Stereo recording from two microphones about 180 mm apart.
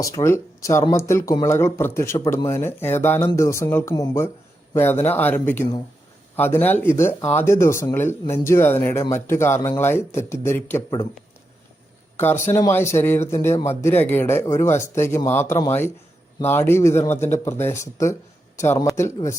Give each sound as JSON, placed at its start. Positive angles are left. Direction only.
{"t": 0.0, "sound": "speech", "side_deg": 15}
{"t": 12.1, "sound": "speech", "side_deg": 15}